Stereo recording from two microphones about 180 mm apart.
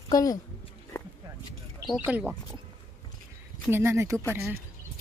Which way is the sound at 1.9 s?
5° right (ahead or behind).